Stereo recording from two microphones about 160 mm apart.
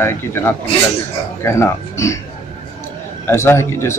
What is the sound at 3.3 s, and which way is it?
Speech, 15° left (ahead or behind).